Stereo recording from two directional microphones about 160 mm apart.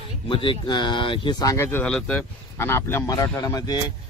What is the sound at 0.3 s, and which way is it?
Speech, 30° left (ahead or behind).